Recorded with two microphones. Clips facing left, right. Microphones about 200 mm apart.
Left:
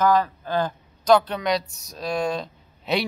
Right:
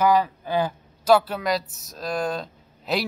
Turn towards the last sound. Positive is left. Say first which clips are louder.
# left 1 dB
turn(degrees=0)  # may be behind; listen again after turning